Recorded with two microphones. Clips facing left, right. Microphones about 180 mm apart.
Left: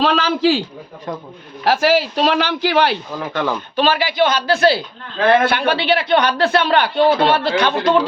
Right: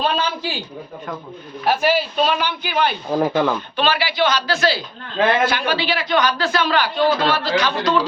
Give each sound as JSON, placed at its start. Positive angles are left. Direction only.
{"t": 0.0, "sound": "a man's voice", "side_deg": 90}
{"t": 1.6, "sound": "a man's voice", "side_deg": 90}
{"t": 3.1, "sound": "speech", "side_deg": -40}
{"t": 3.8, "sound": "a man's voice", "side_deg": 45}
{"t": 7.1, "sound": "a man's voice", "side_deg": 25}
{"t": 7.3, "sound": "a man's voice", "side_deg": 55}